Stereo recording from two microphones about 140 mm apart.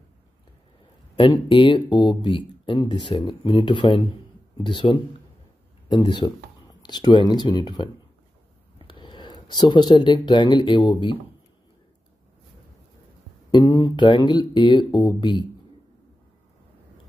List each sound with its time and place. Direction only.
1.3 s speech: 35° left (ahead or behind)
13.5 s speech: 30° left (ahead or behind)